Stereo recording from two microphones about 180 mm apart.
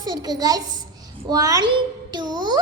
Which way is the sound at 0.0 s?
20° right (ahead or behind).